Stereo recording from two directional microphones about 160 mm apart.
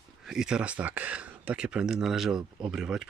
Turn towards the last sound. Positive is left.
turn(degrees=-5)  # may be behind; listen again after turning